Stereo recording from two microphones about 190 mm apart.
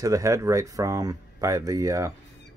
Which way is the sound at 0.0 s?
15° right (ahead or behind).